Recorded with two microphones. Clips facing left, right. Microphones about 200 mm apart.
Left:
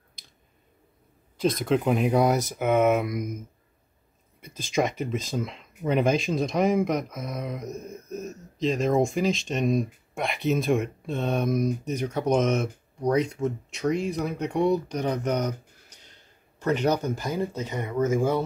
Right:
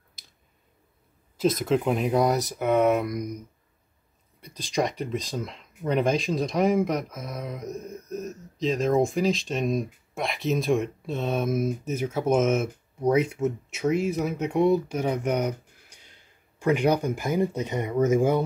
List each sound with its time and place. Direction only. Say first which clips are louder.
1.4 s speech: even; centre (ahead or behind)